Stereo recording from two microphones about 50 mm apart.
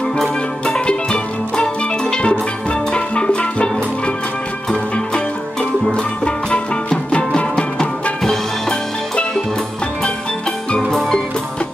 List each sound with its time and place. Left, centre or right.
0.7 s music: left
8.2 s music: centre
10.9 s music: centre